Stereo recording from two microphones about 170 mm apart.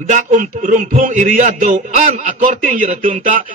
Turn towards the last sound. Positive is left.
turn(degrees=-50)  # may be behind; listen again after turning